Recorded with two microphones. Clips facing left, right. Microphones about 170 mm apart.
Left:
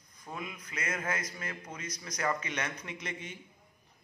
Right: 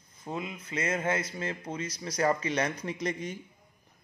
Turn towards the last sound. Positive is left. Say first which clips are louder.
# right 9 dB
turn(degrees=-35)  # may be behind; listen again after turning